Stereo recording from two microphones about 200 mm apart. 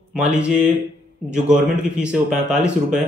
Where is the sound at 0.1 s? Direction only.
5° right (ahead or behind).